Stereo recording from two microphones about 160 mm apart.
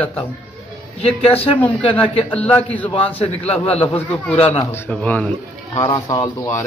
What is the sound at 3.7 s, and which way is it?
Speech, 35° left (ahead or behind).